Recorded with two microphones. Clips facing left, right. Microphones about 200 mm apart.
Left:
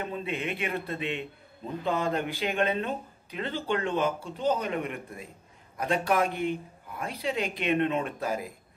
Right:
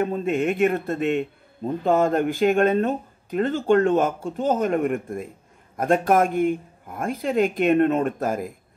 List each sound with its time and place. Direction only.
0.0 s speech: 45° right (ahead or behind)